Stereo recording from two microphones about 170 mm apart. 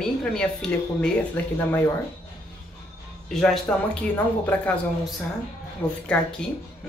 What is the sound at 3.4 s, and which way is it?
Speech, 5° left (ahead or behind).